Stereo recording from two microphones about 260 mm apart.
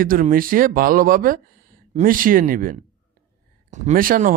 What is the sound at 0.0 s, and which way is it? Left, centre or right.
Speech, right.